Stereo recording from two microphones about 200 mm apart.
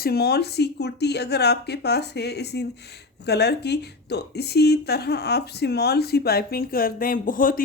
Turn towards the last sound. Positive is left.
turn(degrees=45)  # may be behind; listen again after turning